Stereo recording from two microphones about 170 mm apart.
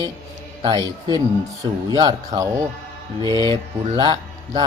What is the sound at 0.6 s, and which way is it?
Speech, 25° right (ahead or behind).